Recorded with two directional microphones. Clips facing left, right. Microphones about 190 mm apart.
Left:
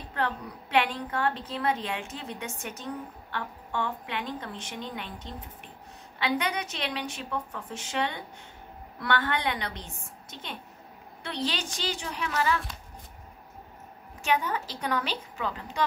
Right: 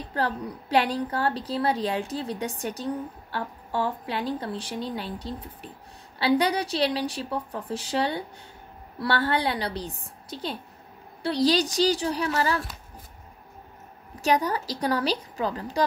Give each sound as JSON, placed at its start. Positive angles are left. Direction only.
{"t": 0.1, "sound": "a woman's voice", "side_deg": -35}
{"t": 14.2, "sound": "a woman's voice", "side_deg": -40}